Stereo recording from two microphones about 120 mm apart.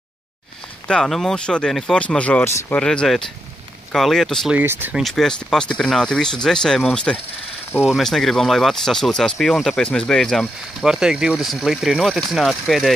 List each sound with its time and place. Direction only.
0.8 s speech: 5° left (ahead or behind)
4.5 s speech: 15° right (ahead or behind)
4.9 s speech: centre (ahead or behind)